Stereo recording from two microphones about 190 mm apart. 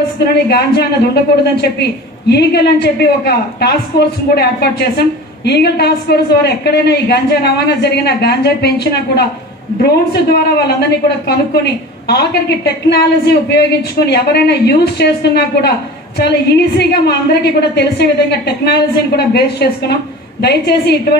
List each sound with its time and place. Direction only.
0.2 s a woman's voice: 60° left (ahead or behind)
2.2 s a woman's voice: 60° left (ahead or behind)